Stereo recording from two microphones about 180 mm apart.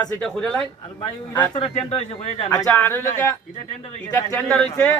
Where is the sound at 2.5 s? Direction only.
10° left (ahead or behind).